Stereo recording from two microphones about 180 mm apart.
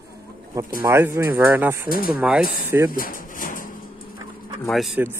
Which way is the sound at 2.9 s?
50° left (ahead or behind).